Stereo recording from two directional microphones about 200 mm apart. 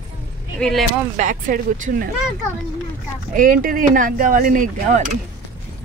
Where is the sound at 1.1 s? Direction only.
40° right (ahead or behind).